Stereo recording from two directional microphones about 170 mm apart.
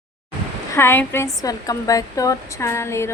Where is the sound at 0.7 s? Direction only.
15° left (ahead or behind).